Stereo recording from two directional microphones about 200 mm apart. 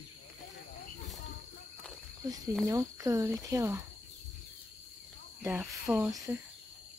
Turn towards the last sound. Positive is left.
turn(degrees=-10)  # may be behind; listen again after turning